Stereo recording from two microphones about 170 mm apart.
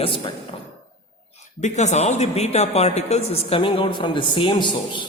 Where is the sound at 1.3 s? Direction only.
45° left (ahead or behind); by 5.1 s 30° left (ahead or behind).